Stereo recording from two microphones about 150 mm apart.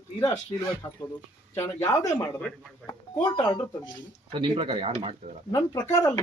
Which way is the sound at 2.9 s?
30° left (ahead or behind).